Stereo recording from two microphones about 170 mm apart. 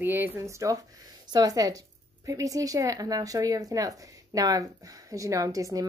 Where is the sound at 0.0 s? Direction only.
10° right (ahead or behind).